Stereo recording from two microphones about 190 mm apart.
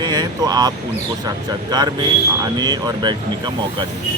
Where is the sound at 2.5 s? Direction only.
20° right (ahead or behind).